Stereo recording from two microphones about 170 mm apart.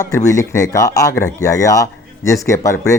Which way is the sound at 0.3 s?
20° left (ahead or behind).